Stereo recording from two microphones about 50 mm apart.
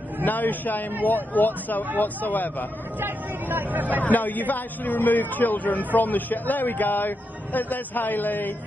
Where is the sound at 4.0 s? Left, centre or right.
Left.